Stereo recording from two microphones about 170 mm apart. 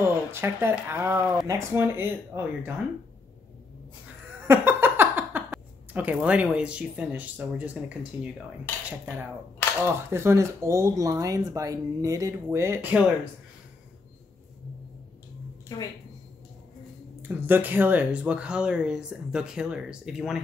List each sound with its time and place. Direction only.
0.0 s speech: 15° right (ahead or behind)
4.5 s speech: 15° right (ahead or behind)
15.7 s a woman's voice: 20° left (ahead or behind)
17.2 s speech: 10° right (ahead or behind)